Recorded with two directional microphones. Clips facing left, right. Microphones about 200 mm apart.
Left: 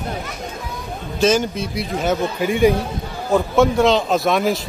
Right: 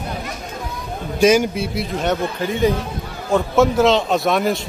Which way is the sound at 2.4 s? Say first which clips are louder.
Left 5 dB; 15° left (ahead or behind).